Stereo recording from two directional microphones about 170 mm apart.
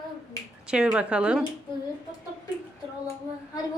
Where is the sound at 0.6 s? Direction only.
5° right (ahead or behind).